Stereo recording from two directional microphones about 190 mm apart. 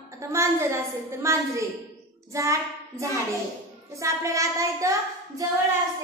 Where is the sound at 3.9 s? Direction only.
15° right (ahead or behind).